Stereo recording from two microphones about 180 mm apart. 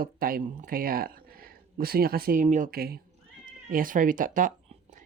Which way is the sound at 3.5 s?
50° right (ahead or behind).